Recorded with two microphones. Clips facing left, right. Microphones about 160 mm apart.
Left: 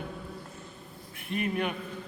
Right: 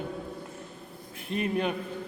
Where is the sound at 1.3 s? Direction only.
30° right (ahead or behind).